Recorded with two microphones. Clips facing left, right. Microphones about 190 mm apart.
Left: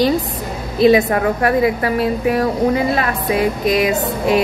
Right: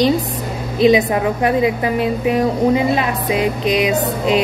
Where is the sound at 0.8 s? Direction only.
15° right (ahead or behind).